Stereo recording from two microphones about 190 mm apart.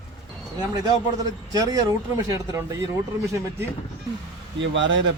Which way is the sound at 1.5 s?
20° right (ahead or behind).